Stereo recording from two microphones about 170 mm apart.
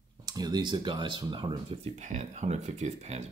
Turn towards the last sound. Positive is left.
turn(degrees=-40)  # may be behind; listen again after turning